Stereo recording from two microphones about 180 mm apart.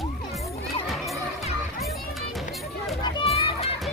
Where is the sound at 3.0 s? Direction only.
30° left (ahead or behind).